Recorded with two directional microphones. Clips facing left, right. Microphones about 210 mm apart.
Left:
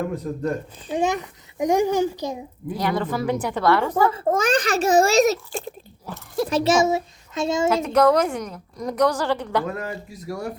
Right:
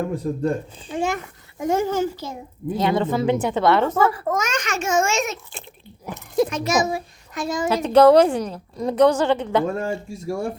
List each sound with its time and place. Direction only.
0.2 s a woman's voice: 30° right (ahead or behind)
0.9 s a child's voice: 20° left (ahead or behind)
2.7 s a woman's voice: 25° right (ahead or behind)
4.1 s speech: 25° left (ahead or behind)
6.1 s speech: 20° right (ahead or behind)
6.5 s a child's voice: 30° left (ahead or behind)
7.7 s a woman's voice: 30° right (ahead or behind)